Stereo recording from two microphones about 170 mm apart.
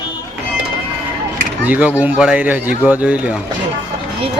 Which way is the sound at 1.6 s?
10° right (ahead or behind).